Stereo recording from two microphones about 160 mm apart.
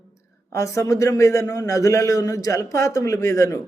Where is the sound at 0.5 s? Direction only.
20° left (ahead or behind).